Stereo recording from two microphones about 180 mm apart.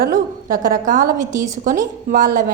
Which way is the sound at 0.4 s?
55° right (ahead or behind).